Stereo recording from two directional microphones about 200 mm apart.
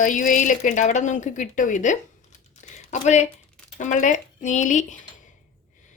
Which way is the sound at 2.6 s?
35° left (ahead or behind).